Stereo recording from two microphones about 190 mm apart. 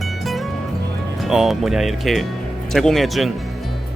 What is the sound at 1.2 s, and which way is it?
Speech, centre (ahead or behind).